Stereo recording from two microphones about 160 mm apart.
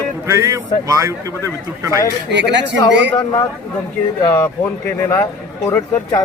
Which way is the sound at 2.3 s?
90° right.